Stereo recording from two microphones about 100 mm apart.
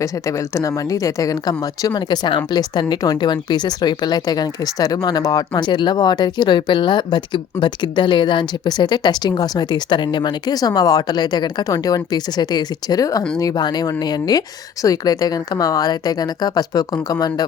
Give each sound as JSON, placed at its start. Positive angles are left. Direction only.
{"t": 0.0, "sound": "a woman's voice", "side_deg": 30}